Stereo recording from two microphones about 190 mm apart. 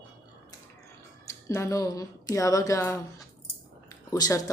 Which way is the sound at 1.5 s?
15° left (ahead or behind).